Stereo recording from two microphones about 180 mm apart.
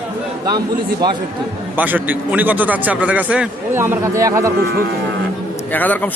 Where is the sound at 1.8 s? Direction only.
10° right (ahead or behind).